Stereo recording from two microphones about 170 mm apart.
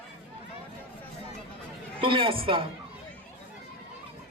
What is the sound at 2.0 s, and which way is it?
Speech, 30° right (ahead or behind).